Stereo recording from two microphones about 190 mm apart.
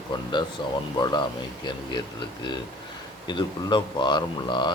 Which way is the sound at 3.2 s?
25° left (ahead or behind).